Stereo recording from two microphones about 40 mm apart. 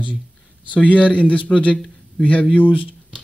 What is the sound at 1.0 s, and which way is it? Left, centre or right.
A man's voice, left.